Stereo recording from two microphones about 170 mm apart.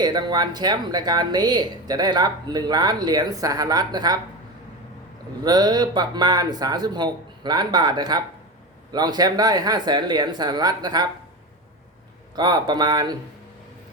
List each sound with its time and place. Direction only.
0.0 s speech: 25° right (ahead or behind)
5.4 s speech: 25° right (ahead or behind)
12.4 s speech: 25° right (ahead or behind)